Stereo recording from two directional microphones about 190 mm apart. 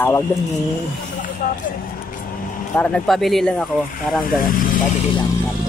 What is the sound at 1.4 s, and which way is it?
Speech, 50° left (ahead or behind).